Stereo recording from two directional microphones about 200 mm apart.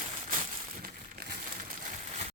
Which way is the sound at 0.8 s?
45° right (ahead or behind).